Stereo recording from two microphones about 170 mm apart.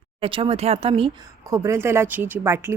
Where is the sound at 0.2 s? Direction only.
30° right (ahead or behind).